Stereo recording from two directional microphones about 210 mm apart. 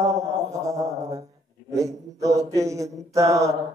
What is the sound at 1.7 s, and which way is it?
Speech, 15° right (ahead or behind).